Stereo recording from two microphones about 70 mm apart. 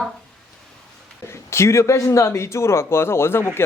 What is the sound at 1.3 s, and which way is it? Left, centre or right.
Speech, left.